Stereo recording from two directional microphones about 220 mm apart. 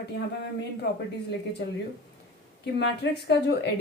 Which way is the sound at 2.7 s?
50° left (ahead or behind).